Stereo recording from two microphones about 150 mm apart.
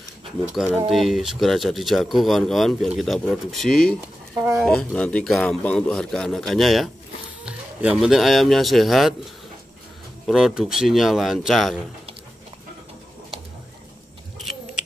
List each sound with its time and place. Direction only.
0.6 s a man's voice: centre (ahead or behind)
10.2 s a man's voice: 5° right (ahead or behind)